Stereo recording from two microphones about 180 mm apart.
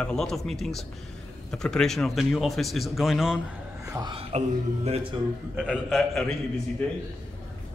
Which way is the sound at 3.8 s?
20° right (ahead or behind).